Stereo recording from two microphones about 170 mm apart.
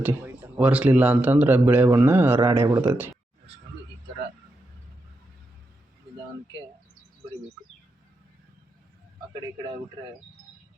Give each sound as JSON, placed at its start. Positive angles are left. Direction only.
{"t": 0.0, "sound": "speech", "side_deg": -15}